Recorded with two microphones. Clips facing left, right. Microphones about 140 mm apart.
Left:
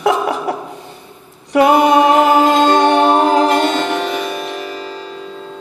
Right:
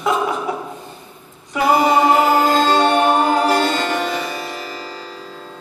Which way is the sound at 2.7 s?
70° left (ahead or behind).